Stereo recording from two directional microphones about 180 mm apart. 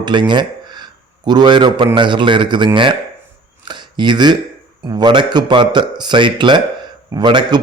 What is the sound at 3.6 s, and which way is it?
Chopping, 25° right (ahead or behind).